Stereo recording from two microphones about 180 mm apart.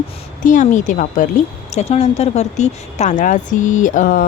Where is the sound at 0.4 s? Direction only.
45° left (ahead or behind).